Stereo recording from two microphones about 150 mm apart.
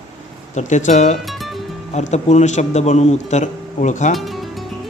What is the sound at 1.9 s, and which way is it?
Speech, 50° left (ahead or behind).